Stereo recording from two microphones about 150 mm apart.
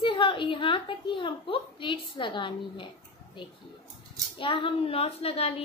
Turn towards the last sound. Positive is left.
turn(degrees=40)  # may be behind; listen again after turning